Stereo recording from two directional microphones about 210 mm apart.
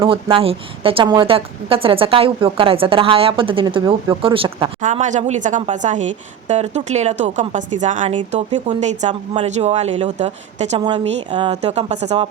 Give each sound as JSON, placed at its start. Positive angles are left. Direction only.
{"t": 0.0, "sound": "a woman's voice", "side_deg": -25}
{"t": 4.8, "sound": "speech", "side_deg": -35}